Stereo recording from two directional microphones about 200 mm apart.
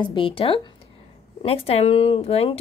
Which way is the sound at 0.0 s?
25° left (ahead or behind).